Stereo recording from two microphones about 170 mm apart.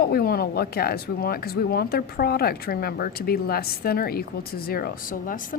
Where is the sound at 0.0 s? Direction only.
65° left (ahead or behind).